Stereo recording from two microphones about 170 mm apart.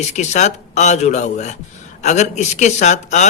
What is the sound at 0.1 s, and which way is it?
Speech, 45° left (ahead or behind).